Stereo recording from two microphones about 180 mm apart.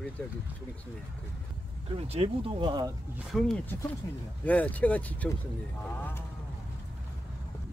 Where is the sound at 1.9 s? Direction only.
35° right (ahead or behind).